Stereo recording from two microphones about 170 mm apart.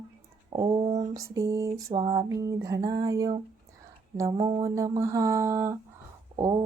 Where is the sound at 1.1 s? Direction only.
20° right (ahead or behind).